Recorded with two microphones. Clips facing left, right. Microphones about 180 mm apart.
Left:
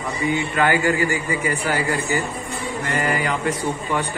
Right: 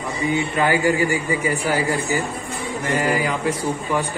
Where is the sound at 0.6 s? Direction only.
15° right (ahead or behind).